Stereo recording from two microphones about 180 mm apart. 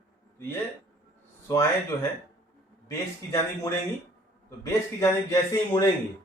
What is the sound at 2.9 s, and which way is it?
Speech, 20° left (ahead or behind).